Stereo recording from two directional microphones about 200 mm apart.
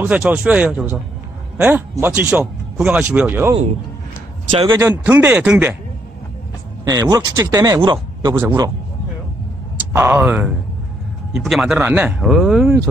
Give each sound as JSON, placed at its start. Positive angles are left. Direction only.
{"t": 0.0, "sound": "speech", "side_deg": -10}
{"t": 4.5, "sound": "a man's voice", "side_deg": -25}
{"t": 4.7, "sound": "speech", "side_deg": -10}
{"t": 6.8, "sound": "speech", "side_deg": -15}
{"t": 9.9, "sound": "speech", "side_deg": -10}